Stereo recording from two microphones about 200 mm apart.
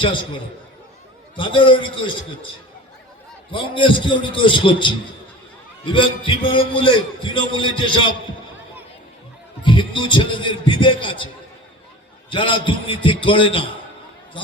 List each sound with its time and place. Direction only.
1.4 s a man's voice: 25° left (ahead or behind)
3.5 s a man's voice: 25° left (ahead or behind)
9.6 s a man's voice: 25° left (ahead or behind)
12.3 s a man's voice: 25° left (ahead or behind)